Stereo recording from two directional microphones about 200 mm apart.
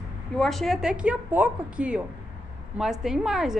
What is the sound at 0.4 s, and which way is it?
Speech, centre (ahead or behind).